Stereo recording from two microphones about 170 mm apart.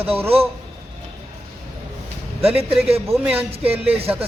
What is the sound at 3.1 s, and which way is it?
Speech, 10° right (ahead or behind).